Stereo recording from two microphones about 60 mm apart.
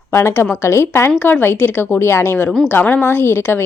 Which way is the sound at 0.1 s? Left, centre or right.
Left.